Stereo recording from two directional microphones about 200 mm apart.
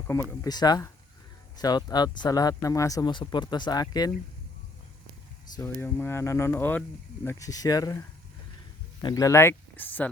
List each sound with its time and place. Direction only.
0.1 s speech: 15° left (ahead or behind)
5.5 s speech: 10° left (ahead or behind)
9.0 s speech: 15° left (ahead or behind)